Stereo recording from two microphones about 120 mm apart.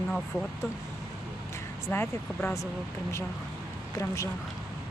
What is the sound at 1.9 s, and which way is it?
Speech, 20° left (ahead or behind).